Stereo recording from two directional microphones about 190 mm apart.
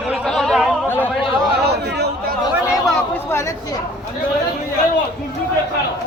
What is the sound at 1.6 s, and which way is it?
Speech, 60° right (ahead or behind).